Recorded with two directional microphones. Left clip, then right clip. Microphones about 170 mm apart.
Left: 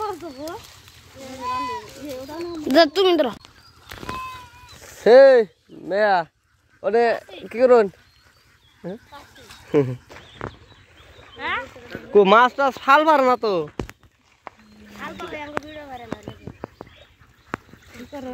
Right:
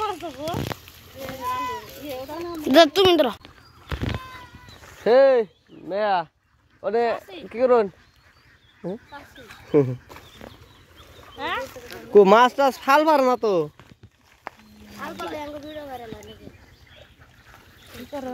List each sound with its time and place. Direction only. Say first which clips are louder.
0.0 s a sound: right 1 dB; 65° left (ahead or behind)
1.6 s run: left 1 dB; 25° left (ahead or behind)
2.0 s a sound: right 2 dB; 65° left (ahead or behind)
2.6 s speech: right 1 dB; centre (ahead or behind)
5.0 s speech: left 5 dB; 30° left (ahead or behind)
9.7 s speech: even; 5° right (ahead or behind)
11.3 s boat: left 2 dB; 70° right (ahead or behind)
12.2 s speech: even; 25° right (ahead or behind)
12.8 s speech: left 4 dB; 10° right (ahead or behind)
15.0 s a sound: right 1 dB; 65° right (ahead or behind)